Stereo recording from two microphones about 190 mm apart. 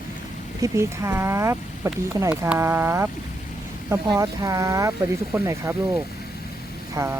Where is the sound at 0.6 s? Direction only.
15° right (ahead or behind).